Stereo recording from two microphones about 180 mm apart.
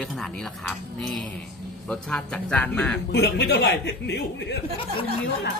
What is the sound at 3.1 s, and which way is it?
A man's voice, 65° left (ahead or behind).